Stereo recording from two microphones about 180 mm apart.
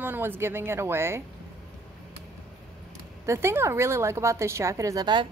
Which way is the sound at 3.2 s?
15° right (ahead or behind).